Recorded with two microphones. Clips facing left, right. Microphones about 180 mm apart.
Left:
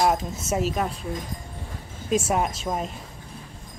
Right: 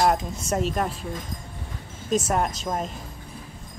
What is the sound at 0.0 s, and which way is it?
Speech, 5° left (ahead or behind).